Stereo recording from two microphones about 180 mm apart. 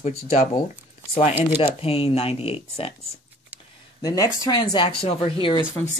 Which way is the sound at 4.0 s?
20° left (ahead or behind).